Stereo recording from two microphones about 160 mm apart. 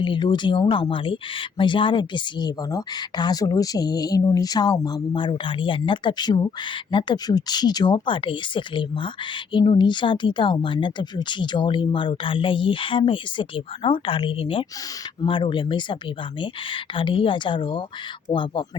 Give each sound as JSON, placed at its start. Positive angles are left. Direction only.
{"t": 0.0, "sound": "speech", "side_deg": 30}